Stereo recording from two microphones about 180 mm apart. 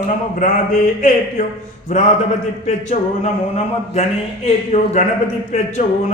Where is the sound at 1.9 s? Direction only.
40° left (ahead or behind).